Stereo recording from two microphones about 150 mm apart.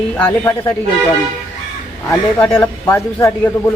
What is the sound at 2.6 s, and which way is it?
Speech, 15° left (ahead or behind).